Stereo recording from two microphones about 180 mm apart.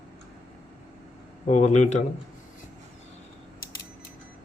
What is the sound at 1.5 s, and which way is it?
Speech, 40° left (ahead or behind).